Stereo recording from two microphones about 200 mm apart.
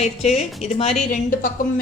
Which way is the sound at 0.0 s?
35° left (ahead or behind).